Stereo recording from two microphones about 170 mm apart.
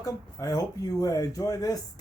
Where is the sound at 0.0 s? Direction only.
20° left (ahead or behind).